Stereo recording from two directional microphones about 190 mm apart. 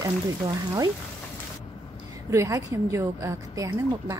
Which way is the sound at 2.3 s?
15° right (ahead or behind).